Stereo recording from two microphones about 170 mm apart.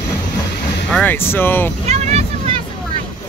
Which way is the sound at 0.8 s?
10° left (ahead or behind).